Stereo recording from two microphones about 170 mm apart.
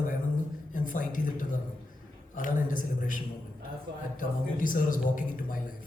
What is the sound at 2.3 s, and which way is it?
Speech, 50° left (ahead or behind).